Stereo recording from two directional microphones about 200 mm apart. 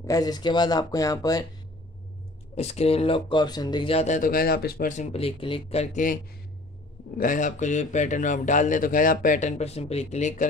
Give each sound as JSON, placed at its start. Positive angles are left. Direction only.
{"t": 0.0, "sound": "speech", "side_deg": 20}
{"t": 2.5, "sound": "speech", "side_deg": 30}
{"t": 7.2, "sound": "speech", "side_deg": 40}